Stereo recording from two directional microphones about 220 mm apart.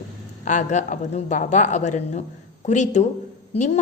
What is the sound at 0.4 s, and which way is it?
A woman's voice, 35° left (ahead or behind).